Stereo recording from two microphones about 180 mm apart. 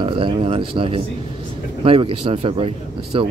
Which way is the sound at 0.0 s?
30° right (ahead or behind).